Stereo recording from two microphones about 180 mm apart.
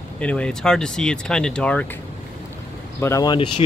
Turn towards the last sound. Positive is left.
turn(degrees=30)  # may be behind; listen again after turning